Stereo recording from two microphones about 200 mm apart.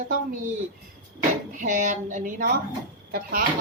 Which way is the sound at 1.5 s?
40° right (ahead or behind).